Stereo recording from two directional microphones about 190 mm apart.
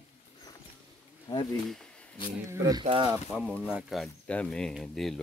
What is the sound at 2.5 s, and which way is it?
Speech, 15° right (ahead or behind).